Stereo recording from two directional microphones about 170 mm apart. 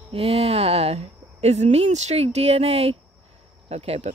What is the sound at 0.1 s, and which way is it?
Speech, 35° right (ahead or behind).